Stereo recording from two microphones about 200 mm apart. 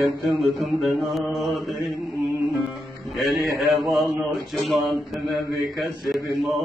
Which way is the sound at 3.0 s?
Centre (ahead or behind).